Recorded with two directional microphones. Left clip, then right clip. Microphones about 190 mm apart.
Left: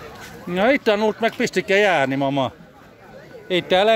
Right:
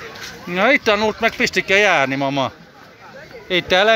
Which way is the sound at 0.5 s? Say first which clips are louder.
Right 3 dB; 20° left (ahead or behind).